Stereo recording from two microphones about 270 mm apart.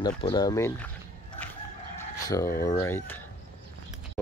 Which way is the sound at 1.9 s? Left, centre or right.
Centre.